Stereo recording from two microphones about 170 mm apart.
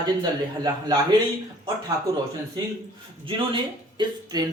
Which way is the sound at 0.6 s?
25° right (ahead or behind).